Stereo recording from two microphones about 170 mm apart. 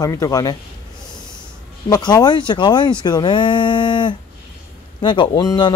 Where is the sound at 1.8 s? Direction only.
25° left (ahead or behind).